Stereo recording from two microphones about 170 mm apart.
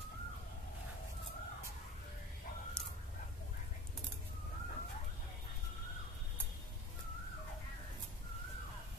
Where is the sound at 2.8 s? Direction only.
5° left (ahead or behind).